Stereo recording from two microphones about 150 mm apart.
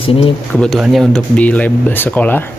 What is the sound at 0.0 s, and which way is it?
Speech, 40° left (ahead or behind).